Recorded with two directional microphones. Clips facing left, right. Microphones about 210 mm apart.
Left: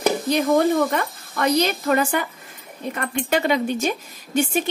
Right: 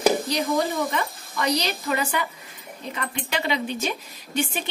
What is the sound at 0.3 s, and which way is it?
Speech, 50° left (ahead or behind).